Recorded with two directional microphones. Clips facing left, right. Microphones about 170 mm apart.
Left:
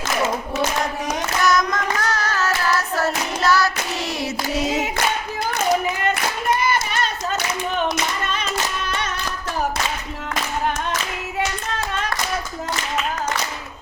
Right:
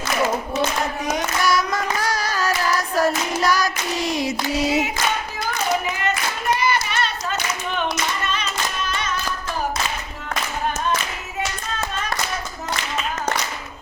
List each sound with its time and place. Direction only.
1.0 s child singing: 10° right (ahead or behind)
6.6 s hands: 50° left (ahead or behind)
8.3 s music: 55° left (ahead or behind)